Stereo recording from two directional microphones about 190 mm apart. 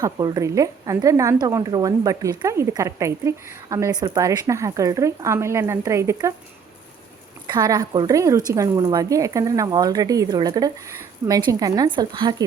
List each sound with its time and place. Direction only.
0.0 s a woman's voice: 20° right (ahead or behind)
7.4 s a woman's voice: 20° right (ahead or behind)